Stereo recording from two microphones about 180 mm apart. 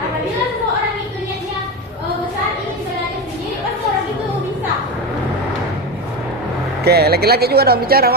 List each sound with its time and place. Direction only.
6.8 s speech: 60° right (ahead or behind)